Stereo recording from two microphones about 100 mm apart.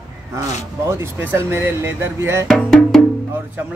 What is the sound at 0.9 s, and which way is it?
Speech, 25° right (ahead or behind).